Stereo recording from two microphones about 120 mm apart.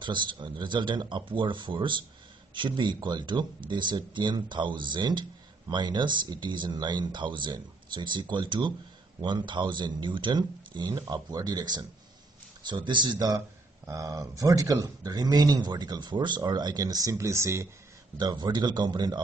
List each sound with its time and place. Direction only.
0.0 s speech: 40° right (ahead or behind); by 17.6 s 25° right (ahead or behind)
18.1 s speech: 35° right (ahead or behind)